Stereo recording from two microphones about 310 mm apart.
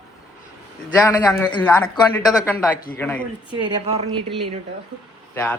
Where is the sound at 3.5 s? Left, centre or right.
Centre.